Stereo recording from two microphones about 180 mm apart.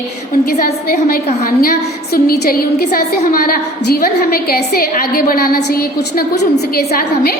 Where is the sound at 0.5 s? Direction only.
50° left (ahead or behind).